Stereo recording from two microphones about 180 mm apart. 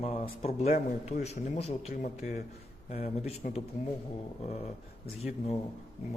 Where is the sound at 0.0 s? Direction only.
35° left (ahead or behind).